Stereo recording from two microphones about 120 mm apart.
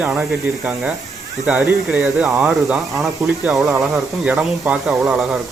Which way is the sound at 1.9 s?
5° right (ahead or behind).